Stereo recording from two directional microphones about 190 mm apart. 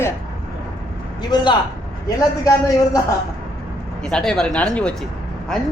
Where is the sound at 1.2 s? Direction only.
20° left (ahead or behind).